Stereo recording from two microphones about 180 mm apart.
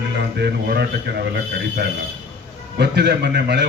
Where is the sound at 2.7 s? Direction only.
65° right (ahead or behind).